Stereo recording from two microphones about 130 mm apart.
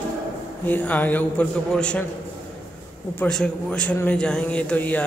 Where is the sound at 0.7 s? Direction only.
15° left (ahead or behind).